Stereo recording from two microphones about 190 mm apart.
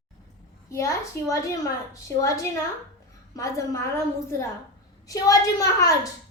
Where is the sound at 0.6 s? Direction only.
15° left (ahead or behind).